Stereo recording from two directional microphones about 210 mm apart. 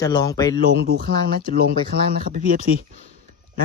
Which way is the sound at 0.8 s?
45° right (ahead or behind).